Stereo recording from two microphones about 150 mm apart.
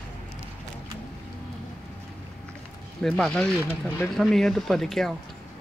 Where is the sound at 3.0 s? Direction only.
5° left (ahead or behind).